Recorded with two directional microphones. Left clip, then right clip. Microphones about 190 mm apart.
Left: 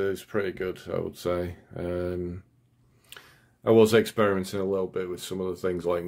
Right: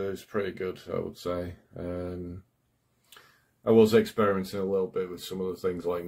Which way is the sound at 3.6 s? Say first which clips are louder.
Left 1 dB; 30° left (ahead or behind).